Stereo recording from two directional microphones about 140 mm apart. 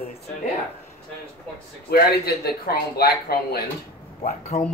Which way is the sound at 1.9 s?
90° left.